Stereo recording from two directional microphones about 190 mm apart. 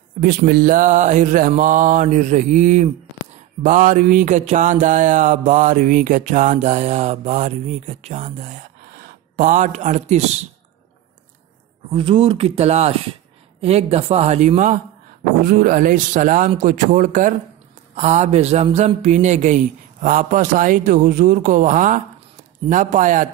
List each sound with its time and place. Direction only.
0.2 s speech: 50° right (ahead or behind)
3.6 s mantra: 45° right (ahead or behind)
11.9 s mantra: 30° right (ahead or behind)
15.4 s speech: 45° right (ahead or behind)
17.9 s mantra: 35° right (ahead or behind)
19.0 s speech: 40° right (ahead or behind)